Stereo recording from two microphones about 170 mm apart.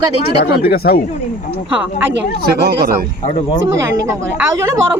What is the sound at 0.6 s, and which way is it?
Speech, 60° left (ahead or behind).